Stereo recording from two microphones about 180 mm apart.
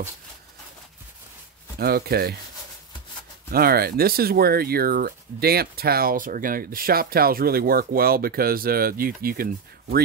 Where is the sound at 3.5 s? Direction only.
60° right (ahead or behind).